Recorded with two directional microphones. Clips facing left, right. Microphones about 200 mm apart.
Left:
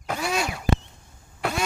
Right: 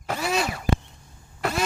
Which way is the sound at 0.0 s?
Centre (ahead or behind).